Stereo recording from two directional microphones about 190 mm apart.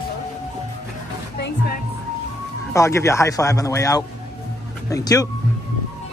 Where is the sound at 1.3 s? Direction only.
55° left (ahead or behind).